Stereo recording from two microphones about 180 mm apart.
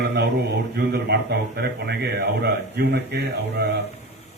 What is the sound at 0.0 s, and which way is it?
Mantra, 65° right (ahead or behind).